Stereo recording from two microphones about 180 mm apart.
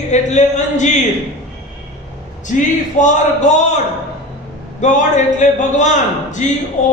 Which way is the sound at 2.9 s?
40° left (ahead or behind).